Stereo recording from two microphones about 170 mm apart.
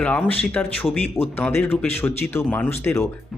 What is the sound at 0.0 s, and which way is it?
Speech, 10° left (ahead or behind).